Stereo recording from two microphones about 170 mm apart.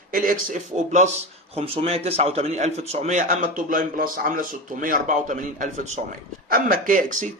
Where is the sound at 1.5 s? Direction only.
35° right (ahead or behind); by 5.3 s 50° right (ahead or behind).